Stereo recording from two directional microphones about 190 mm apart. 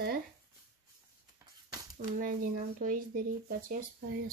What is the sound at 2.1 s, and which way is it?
Speech, 45° right (ahead or behind).